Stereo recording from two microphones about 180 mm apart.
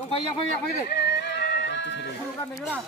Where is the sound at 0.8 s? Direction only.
65° left (ahead or behind).